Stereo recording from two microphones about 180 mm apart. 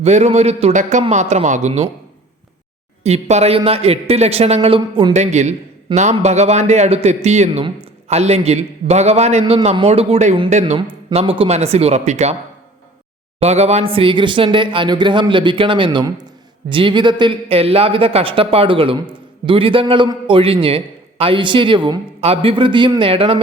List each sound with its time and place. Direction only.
0.0 s a man's voice: 35° right (ahead or behind)
3.0 s a man's voice: 35° right (ahead or behind)
13.4 s speech: 35° right (ahead or behind)